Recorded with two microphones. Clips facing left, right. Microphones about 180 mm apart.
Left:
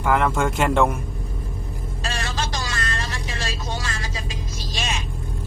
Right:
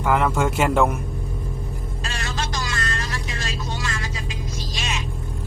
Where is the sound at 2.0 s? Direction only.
35° left (ahead or behind).